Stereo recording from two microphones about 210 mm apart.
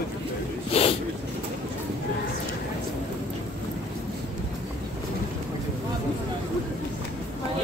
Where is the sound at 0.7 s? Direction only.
25° left (ahead or behind).